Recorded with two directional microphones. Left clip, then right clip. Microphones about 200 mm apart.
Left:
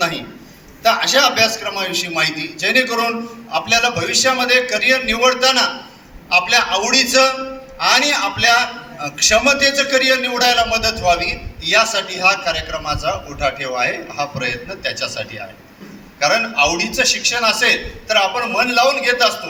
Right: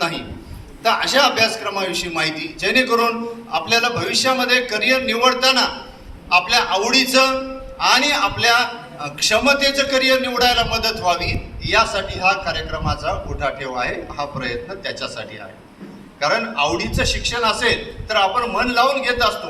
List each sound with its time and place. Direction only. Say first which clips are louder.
0.8 s a man's voice: left 2 dB; 35° left (ahead or behind)
16.2 s a man's voice: left 4 dB; 40° left (ahead or behind)